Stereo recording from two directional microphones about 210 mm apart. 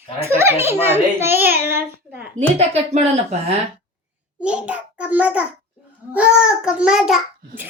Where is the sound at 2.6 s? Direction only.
30° right (ahead or behind).